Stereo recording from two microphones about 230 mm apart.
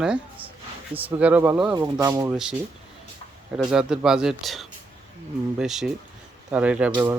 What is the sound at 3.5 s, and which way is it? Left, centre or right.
Speech, centre.